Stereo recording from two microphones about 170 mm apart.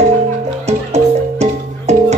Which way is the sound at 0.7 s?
40° right (ahead or behind).